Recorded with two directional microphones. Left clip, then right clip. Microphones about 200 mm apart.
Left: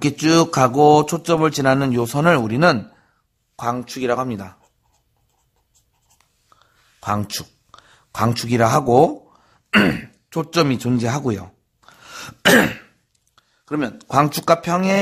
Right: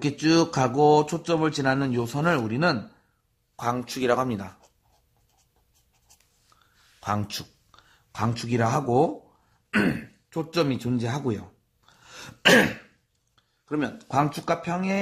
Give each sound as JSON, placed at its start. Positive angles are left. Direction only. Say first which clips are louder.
{"t": 0.0, "sound": "speech", "louder": "left 6 dB", "side_deg": 35}
{"t": 3.5, "sound": "speech", "louder": "left 4 dB", "side_deg": 20}
{"t": 6.6, "sound": "a sound", "louder": "left 5 dB", "side_deg": 25}
{"t": 9.7, "sound": "speech", "louder": "left 9 dB", "side_deg": 45}